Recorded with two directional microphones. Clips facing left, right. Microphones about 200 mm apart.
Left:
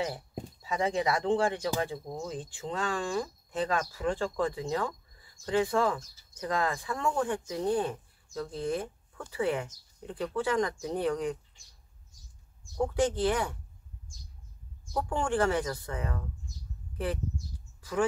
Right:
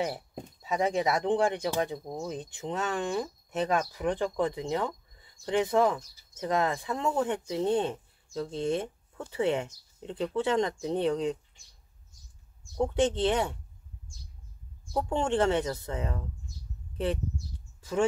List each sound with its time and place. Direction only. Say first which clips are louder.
0.6 s speech: right 2 dB; 20° right (ahead or behind)
12.7 s speech: right 2 dB; 20° right (ahead or behind)
15.0 s speech: right 2 dB; 25° right (ahead or behind)
17.7 s a sound: right 2 dB; 25° right (ahead or behind)